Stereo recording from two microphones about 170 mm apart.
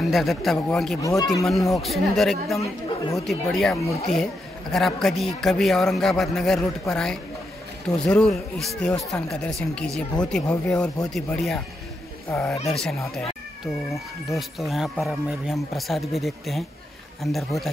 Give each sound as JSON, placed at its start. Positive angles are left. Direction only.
{"t": 0.1, "sound": "speech", "side_deg": 0}
{"t": 1.0, "sound": "speech", "side_deg": 20}
{"t": 1.4, "sound": "speech", "side_deg": 0}
{"t": 2.6, "sound": "speech", "side_deg": 20}
{"t": 3.3, "sound": "speech", "side_deg": 0}
{"t": 3.7, "sound": "speech", "side_deg": 20}
{"t": 4.1, "sound": "speech", "side_deg": 5}
{"t": 13.9, "sound": "speech", "side_deg": 0}